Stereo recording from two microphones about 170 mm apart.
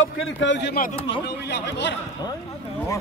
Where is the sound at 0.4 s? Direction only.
90° left.